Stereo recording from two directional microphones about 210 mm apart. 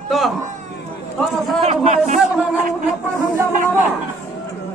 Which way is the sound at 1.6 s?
30° right (ahead or behind).